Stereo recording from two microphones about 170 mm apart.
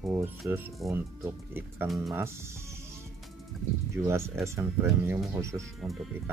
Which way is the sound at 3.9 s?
15° right (ahead or behind).